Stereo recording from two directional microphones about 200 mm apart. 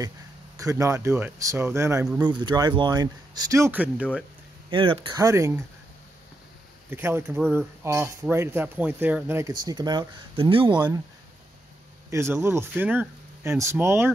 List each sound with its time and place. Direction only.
0.6 s speech: 15° right (ahead or behind)
4.6 s speech: 25° right (ahead or behind)
6.9 s speech: 10° right (ahead or behind)
12.1 s speech: 10° right (ahead or behind)